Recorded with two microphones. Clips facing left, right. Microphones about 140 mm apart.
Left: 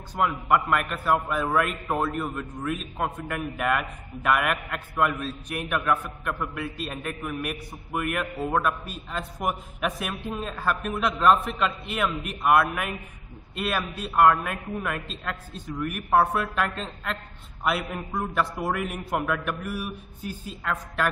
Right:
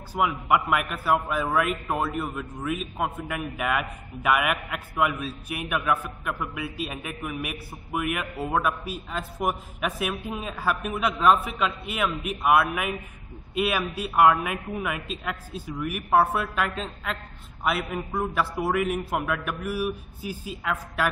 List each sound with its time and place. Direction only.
0.1 s a man's voice: 5° right (ahead or behind)